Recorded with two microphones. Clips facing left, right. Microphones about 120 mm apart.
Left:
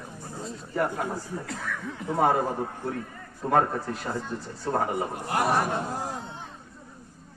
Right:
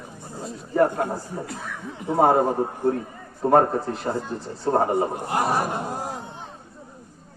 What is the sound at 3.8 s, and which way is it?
A man's voice, 30° right (ahead or behind).